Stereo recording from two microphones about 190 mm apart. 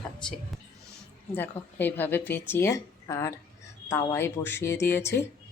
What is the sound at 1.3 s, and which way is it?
Speech, 10° left (ahead or behind).